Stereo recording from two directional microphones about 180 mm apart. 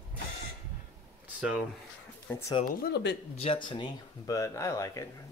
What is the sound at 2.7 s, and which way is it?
Speech, 60° left (ahead or behind).